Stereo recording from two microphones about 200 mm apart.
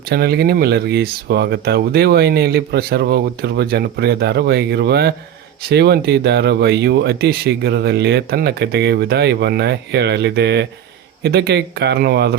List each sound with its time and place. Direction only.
0.1 s speech: 55° right (ahead or behind)